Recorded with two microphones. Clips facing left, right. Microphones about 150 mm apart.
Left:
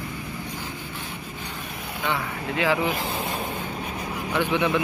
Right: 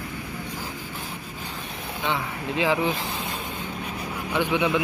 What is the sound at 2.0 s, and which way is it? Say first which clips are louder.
Speech: even; 15° right (ahead or behind).